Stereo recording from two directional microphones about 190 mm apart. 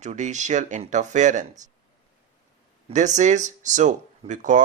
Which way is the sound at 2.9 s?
40° right (ahead or behind).